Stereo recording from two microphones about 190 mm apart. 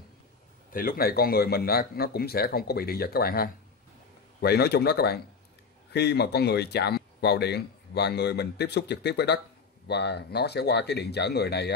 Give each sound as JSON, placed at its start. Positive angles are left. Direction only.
{"t": 0.7, "sound": "speech", "side_deg": 50}